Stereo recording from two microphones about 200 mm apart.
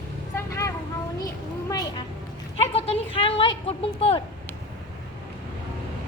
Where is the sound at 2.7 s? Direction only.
30° left (ahead or behind).